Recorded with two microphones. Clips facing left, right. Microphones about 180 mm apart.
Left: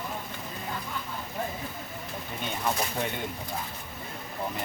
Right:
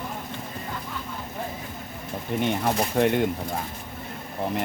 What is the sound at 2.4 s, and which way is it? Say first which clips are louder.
Speech: right 6 dB; 70° right (ahead or behind).